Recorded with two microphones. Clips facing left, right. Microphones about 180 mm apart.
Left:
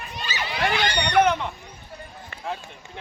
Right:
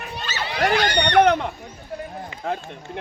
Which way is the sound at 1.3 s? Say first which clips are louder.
Right 4 dB; 50° right (ahead or behind).